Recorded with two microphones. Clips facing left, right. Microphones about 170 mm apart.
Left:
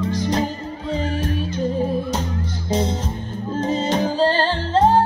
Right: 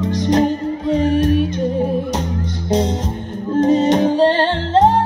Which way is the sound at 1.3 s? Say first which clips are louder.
Right 6 dB; 15° right (ahead or behind).